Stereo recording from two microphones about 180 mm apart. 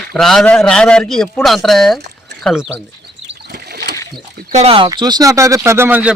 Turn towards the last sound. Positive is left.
turn(degrees=-10)  # may be behind; listen again after turning